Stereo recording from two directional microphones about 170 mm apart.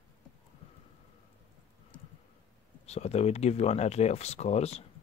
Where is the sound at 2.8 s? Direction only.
40° left (ahead or behind).